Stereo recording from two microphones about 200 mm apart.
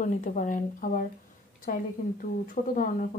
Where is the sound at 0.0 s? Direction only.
40° left (ahead or behind).